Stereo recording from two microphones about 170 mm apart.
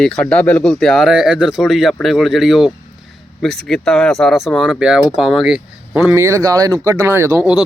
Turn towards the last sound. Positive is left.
turn(degrees=-15)  # may be behind; listen again after turning